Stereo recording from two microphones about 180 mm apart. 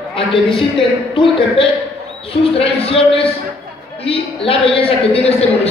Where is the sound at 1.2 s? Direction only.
30° left (ahead or behind).